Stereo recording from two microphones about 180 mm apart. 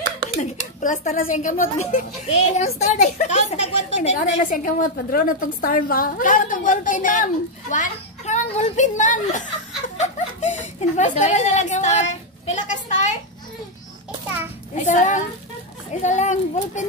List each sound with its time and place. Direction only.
0.4 s a woman's voice: 45° left (ahead or behind)
9.9 s chuckle: 40° left (ahead or behind)
14.9 s a woman's voice: 45° left (ahead or behind)